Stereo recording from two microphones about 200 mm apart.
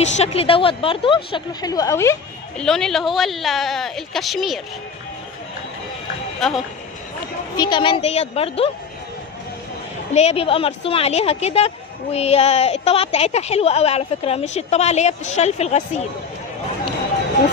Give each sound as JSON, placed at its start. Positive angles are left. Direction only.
{"t": 0.1, "sound": "speech", "side_deg": 30}
{"t": 2.6, "sound": "a woman's voice", "side_deg": 5}
{"t": 6.4, "sound": "a woman's voice", "side_deg": 0}
{"t": 7.5, "sound": "speech", "side_deg": 20}
{"t": 10.1, "sound": "a woman's voice", "side_deg": 30}